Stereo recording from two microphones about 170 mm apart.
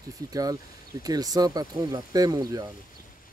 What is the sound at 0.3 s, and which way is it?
Speech, 20° right (ahead or behind).